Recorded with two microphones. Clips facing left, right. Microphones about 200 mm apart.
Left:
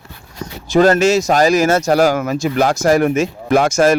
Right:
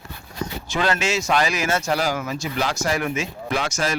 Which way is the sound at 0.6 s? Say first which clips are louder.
Left 12 dB; 45° left (ahead or behind).